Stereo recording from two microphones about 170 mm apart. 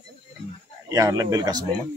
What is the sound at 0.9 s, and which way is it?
Speech, 20° right (ahead or behind).